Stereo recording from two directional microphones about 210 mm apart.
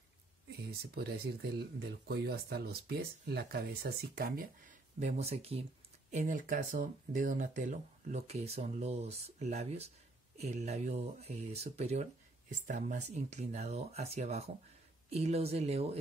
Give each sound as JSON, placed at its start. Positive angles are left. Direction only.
{"t": 0.7, "sound": "speech", "side_deg": -50}